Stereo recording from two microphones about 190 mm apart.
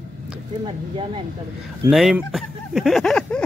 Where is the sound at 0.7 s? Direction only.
25° right (ahead or behind).